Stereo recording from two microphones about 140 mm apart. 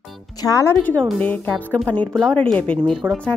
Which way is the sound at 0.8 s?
10° left (ahead or behind).